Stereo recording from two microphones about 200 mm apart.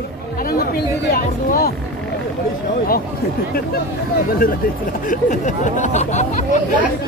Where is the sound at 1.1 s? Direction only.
50° left (ahead or behind).